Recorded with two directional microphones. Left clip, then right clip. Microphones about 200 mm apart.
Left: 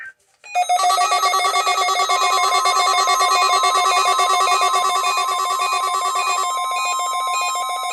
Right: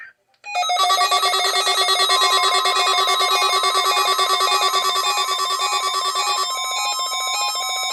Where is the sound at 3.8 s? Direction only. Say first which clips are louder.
Left 2 dB; 30° right (ahead or behind).